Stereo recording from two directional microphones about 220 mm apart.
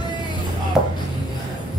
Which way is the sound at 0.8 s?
5° right (ahead or behind).